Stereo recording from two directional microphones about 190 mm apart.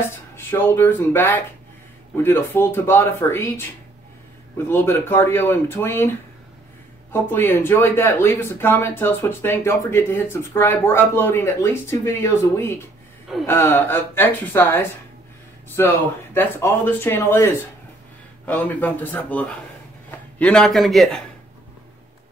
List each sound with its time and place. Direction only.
0.0 s a man's voice: 10° left (ahead or behind)